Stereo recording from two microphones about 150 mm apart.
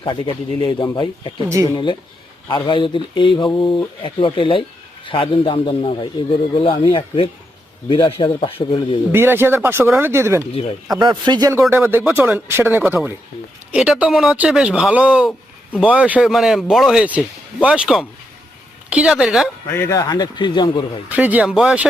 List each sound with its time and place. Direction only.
0.0 s a man's voice: 35° left (ahead or behind)
9.1 s a man's voice: 15° right (ahead or behind)
19.7 s a man's voice: 20° left (ahead or behind)
21.1 s speech: 10° right (ahead or behind)